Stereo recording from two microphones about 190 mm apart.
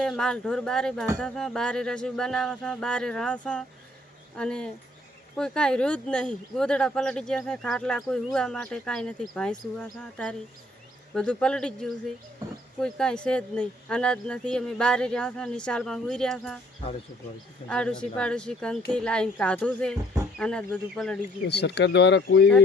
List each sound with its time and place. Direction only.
0.0 s speech: 5° left (ahead or behind)
17.7 s speech: 5° left (ahead or behind)
21.4 s speech: 60° left (ahead or behind)